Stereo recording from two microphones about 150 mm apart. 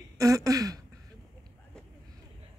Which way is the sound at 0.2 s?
20° right (ahead or behind).